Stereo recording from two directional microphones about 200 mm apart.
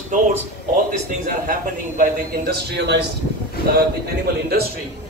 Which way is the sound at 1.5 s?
45° right (ahead or behind).